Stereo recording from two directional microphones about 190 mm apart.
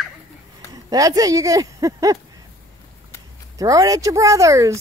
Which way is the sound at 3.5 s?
20° right (ahead or behind).